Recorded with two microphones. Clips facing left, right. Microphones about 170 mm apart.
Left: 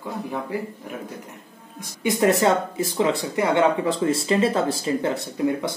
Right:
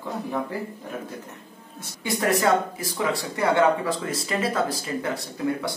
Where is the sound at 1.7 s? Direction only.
20° left (ahead or behind).